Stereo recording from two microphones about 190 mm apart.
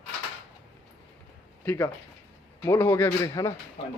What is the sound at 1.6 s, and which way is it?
A man's voice, 10° left (ahead or behind).